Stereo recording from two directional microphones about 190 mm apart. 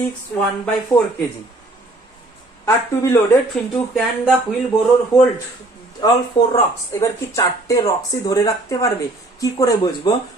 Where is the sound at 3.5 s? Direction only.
Centre (ahead or behind).